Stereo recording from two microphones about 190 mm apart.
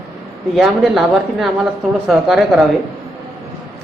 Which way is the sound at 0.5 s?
Centre (ahead or behind).